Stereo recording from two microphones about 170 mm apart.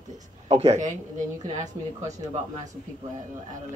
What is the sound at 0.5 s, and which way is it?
Speech, 40° right (ahead or behind).